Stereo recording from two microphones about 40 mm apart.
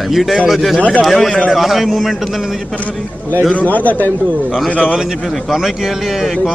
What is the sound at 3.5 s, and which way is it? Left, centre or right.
Speech, left.